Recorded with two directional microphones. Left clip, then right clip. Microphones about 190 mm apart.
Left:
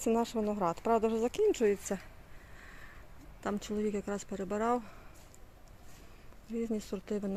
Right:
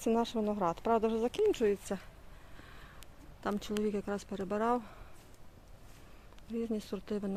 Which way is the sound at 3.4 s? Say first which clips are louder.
Even; centre (ahead or behind).